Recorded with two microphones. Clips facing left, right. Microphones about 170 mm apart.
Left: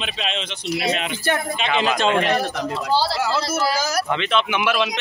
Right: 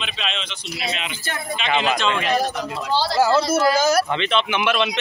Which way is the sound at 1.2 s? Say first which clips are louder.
Left 8 dB; 65° left (ahead or behind).